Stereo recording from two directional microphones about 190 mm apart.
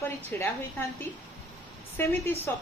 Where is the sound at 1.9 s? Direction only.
10° left (ahead or behind).